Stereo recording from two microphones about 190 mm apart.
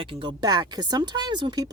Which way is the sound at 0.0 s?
25° right (ahead or behind).